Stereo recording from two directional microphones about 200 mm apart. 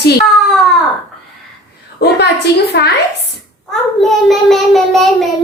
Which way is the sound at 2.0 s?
50° left (ahead or behind).